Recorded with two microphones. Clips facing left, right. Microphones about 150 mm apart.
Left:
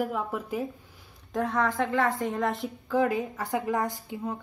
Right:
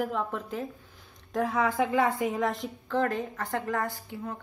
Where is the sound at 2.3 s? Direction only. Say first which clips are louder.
Left 1 dB; centre (ahead or behind).